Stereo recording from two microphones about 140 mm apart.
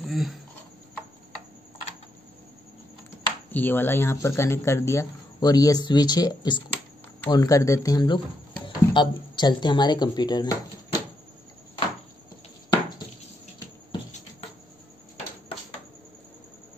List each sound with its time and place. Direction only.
0.0 s speech: centre (ahead or behind)
3.5 s speech: 15° left (ahead or behind); by 11.0 s 30° left (ahead or behind)